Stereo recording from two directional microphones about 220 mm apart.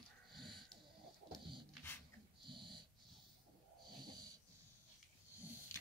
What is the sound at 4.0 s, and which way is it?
Wheeze, 20° right (ahead or behind).